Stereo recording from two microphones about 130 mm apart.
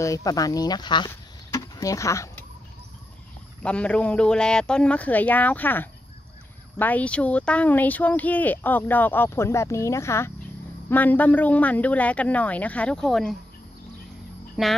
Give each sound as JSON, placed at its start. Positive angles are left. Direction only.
{"t": 0.0, "sound": "speech", "side_deg": 25}
{"t": 1.5, "sound": "a sound", "side_deg": 25}
{"t": 3.6, "sound": "speech", "side_deg": 10}
{"t": 14.6, "sound": "frog", "side_deg": -5}